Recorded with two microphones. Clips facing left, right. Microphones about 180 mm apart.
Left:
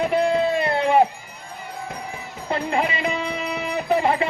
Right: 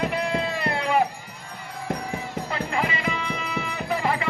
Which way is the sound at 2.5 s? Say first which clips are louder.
Left 5 dB; 25° left (ahead or behind).